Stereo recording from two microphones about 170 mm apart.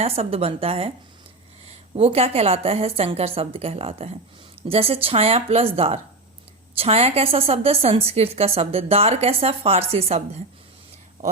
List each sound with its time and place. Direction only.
0.0 s a woman's voice: 35° right (ahead or behind)
2.0 s a woman's voice: 35° right (ahead or behind)